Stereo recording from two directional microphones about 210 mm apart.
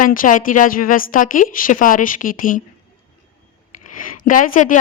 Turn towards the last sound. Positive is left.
turn(degrees=40)  # may be behind; listen again after turning